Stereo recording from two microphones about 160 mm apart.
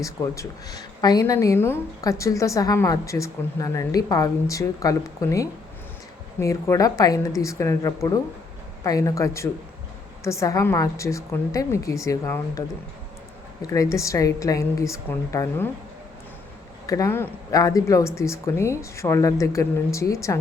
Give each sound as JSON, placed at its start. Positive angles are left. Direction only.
{"t": 0.0, "sound": "a woman's voice", "side_deg": 20}
{"t": 16.8, "sound": "a woman's voice", "side_deg": 20}